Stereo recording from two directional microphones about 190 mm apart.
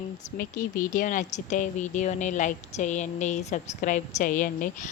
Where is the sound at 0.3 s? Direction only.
45° left (ahead or behind).